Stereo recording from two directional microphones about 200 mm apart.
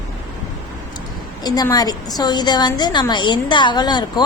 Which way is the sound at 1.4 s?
20° left (ahead or behind).